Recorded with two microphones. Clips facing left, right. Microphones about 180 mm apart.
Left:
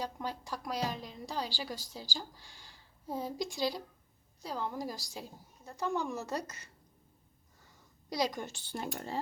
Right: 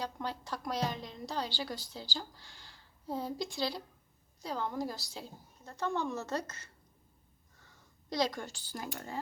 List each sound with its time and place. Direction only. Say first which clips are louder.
0.0 s a woman's voice: even; 10° left (ahead or behind)
8.1 s speech: even; 15° left (ahead or behind)